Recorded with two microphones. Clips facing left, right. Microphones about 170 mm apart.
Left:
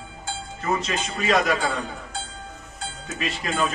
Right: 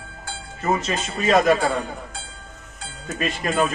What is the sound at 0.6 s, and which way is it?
Speech, 40° right (ahead or behind).